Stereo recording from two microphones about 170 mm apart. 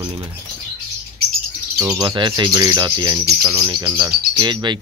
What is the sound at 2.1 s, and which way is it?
Speech, 25° right (ahead or behind).